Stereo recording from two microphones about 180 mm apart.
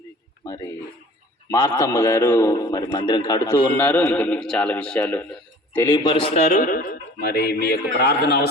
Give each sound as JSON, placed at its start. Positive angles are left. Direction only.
{"t": 0.4, "sound": "a man's voice", "side_deg": 20}